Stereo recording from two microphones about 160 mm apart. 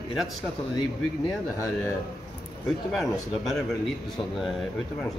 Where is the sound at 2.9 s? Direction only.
Centre (ahead or behind).